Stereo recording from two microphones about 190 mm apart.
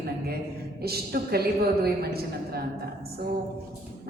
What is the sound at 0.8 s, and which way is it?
Speech, 55° right (ahead or behind).